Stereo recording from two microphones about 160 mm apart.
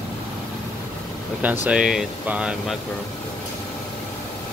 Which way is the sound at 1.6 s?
5° right (ahead or behind).